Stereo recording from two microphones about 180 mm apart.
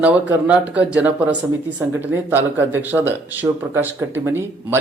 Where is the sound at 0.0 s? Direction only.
5° right (ahead or behind).